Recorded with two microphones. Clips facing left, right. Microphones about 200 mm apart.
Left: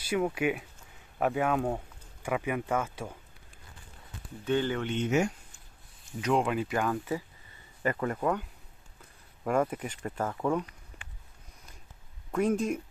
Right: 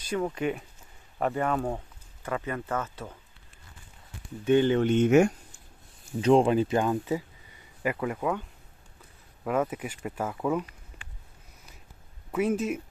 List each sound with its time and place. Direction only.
0.0 s speech: 10° left (ahead or behind)
4.5 s speech: 15° right (ahead or behind)
4.8 s speech: 50° right (ahead or behind)
6.2 s speech: 30° right (ahead or behind)
7.8 s speech: 5° right (ahead or behind)
12.3 s speech: 5° right (ahead or behind)